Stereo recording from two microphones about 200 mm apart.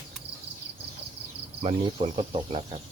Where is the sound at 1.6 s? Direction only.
30° right (ahead or behind).